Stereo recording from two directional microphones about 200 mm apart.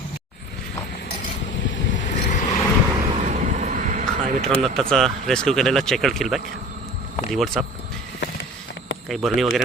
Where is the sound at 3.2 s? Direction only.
40° right (ahead or behind).